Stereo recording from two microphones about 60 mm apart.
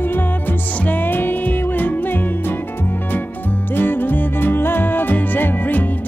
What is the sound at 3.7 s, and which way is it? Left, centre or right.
Music, left.